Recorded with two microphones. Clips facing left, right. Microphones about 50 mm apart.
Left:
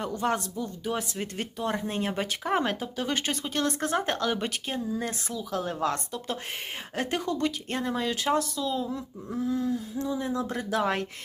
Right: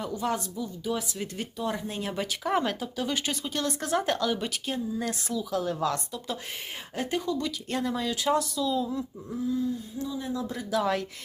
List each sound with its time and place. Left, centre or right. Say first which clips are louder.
0.0 s speech: left 2 dB; left
5.5 s speech: even; left
6.9 s speech: even; left
7.7 s speech: even; left
9.4 s a sound: left 1 dB; left
10.0 s speech: left 2 dB; left